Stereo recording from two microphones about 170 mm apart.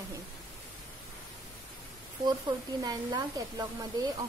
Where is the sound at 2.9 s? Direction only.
20° right (ahead or behind).